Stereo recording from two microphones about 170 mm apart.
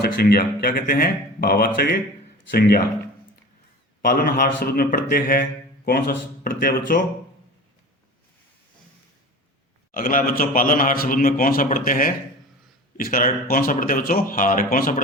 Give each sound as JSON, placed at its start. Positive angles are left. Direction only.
{"t": 0.0, "sound": "a man's voice", "side_deg": 65}
{"t": 4.0, "sound": "a man's voice", "side_deg": 55}
{"t": 9.9, "sound": "a man's voice", "side_deg": 55}